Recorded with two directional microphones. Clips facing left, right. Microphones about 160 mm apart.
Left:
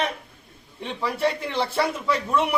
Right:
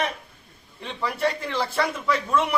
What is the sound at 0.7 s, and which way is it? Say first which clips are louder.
Speech: left 1 dB; 15° left (ahead or behind).